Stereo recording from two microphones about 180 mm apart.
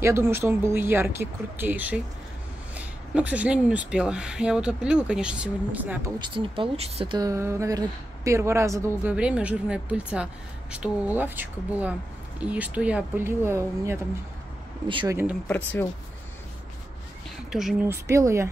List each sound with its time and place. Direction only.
0.0 s a woman's voice: 15° right (ahead or behind)
6.1 s speech: 25° right (ahead or behind)
7.2 s a woman's voice: 15° right (ahead or behind)
14.9 s speech: 25° right (ahead or behind)
15.4 s speech: 10° left (ahead or behind)
17.5 s speech: centre (ahead or behind)
18.1 s a woman's voice: 15° right (ahead or behind)